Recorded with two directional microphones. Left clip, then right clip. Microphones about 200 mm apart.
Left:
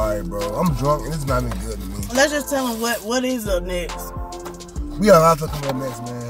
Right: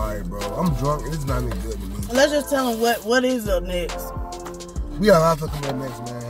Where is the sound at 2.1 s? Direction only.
5° right (ahead or behind).